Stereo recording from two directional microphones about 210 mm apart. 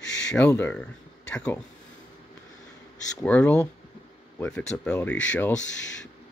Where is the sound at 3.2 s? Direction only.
5° left (ahead or behind).